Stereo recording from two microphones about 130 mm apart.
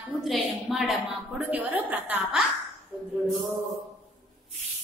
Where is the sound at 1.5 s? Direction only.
15° right (ahead or behind).